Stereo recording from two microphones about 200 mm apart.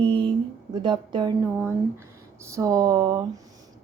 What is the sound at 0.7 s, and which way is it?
Speech, 25° right (ahead or behind).